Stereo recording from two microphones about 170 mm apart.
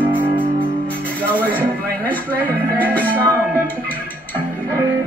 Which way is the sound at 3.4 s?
10° left (ahead or behind).